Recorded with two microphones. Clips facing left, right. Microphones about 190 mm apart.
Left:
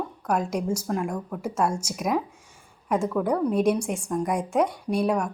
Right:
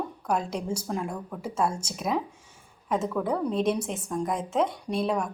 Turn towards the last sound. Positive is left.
turn(degrees=10)  # may be behind; listen again after turning